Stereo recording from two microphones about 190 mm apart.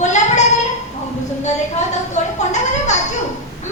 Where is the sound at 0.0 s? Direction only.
40° left (ahead or behind).